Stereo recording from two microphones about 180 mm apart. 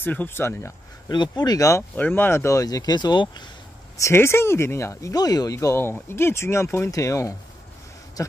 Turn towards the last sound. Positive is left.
turn(degrees=15)  # may be behind; listen again after turning